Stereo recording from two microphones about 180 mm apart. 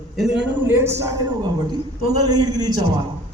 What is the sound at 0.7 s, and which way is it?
Speech, 15° right (ahead or behind).